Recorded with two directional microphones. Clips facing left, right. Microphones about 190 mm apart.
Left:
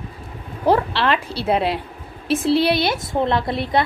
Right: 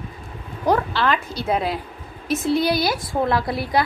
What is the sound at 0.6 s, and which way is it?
A woman's voice, 30° left (ahead or behind).